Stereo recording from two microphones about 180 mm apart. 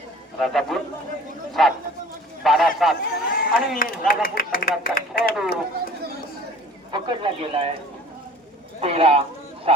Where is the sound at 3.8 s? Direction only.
50° left (ahead or behind).